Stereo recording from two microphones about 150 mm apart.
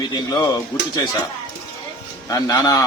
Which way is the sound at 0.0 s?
25° left (ahead or behind).